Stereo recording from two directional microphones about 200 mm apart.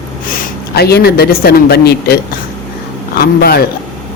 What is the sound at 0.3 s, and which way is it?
A man's voice, 50° left (ahead or behind).